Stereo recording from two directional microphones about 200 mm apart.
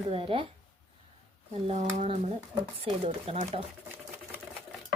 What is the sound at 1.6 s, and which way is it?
Speech, 35° right (ahead or behind).